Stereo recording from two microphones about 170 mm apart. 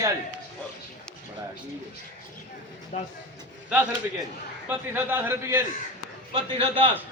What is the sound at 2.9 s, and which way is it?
Speech, 40° left (ahead or behind).